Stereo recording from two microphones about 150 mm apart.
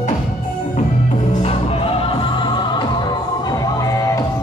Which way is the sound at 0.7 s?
50° left (ahead or behind).